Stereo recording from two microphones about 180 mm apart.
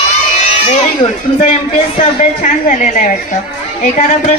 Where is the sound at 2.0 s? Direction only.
45° left (ahead or behind).